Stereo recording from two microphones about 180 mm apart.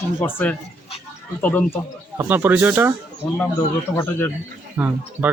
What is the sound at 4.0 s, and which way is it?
Speech, 10° left (ahead or behind).